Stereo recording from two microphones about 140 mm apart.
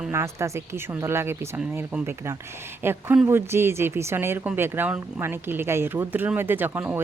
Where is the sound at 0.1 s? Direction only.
20° right (ahead or behind).